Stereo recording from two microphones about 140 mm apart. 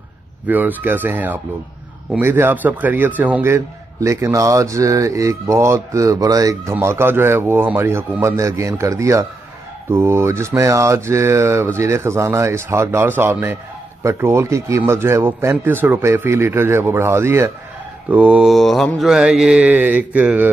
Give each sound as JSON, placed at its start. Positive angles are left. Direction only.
{"t": 0.5, "sound": "a man's voice", "side_deg": -10}
{"t": 18.1, "sound": "mantra", "side_deg": -10}